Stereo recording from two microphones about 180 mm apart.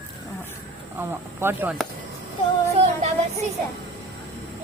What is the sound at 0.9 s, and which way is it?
Speech, 10° right (ahead or behind).